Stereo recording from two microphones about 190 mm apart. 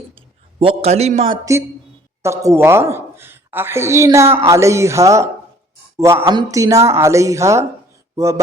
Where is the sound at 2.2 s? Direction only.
15° right (ahead or behind).